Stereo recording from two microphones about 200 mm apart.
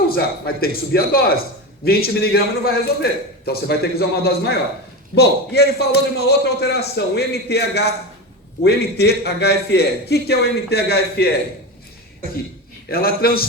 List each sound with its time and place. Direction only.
0.4 s a man's voice: 50° left (ahead or behind)
12.9 s a man's voice: 50° left (ahead or behind)